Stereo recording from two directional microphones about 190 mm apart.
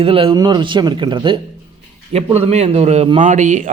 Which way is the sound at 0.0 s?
30° right (ahead or behind).